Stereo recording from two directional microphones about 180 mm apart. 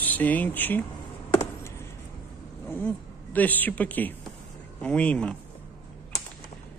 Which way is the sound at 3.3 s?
10° left (ahead or behind).